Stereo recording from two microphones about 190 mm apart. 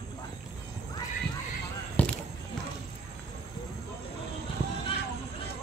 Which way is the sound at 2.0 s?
5° left (ahead or behind).